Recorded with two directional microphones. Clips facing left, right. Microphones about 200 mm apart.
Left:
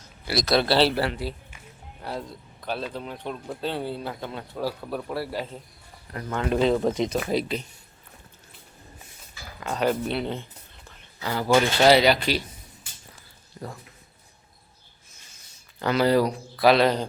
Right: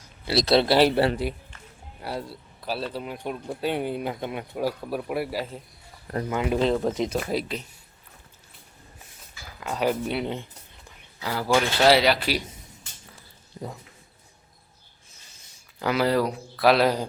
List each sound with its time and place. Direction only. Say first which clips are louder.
0.3 s speech: right 2 dB; 25° right (ahead or behind)
2.0 s speech: right 1 dB; 10° right (ahead or behind)
9.6 s speech: left 1 dB; 5° right (ahead or behind)
13.6 s speech: right 1 dB; 20° right (ahead or behind)
15.8 s speech: left 2 dB; 5° right (ahead or behind)